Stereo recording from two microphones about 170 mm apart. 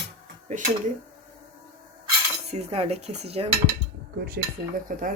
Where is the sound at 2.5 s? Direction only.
40° right (ahead or behind).